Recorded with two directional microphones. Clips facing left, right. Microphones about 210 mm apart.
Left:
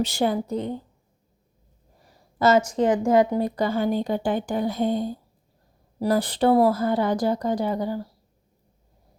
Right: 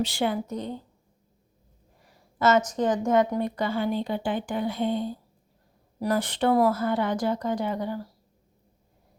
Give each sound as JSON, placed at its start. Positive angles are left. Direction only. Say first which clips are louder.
{"t": 0.0, "sound": "speech", "louder": "left 3 dB", "side_deg": 40}
{"t": 2.0, "sound": "a sound", "louder": "left 3 dB", "side_deg": 35}
{"t": 2.6, "sound": "a woman's voice", "louder": "left 4 dB", "side_deg": 25}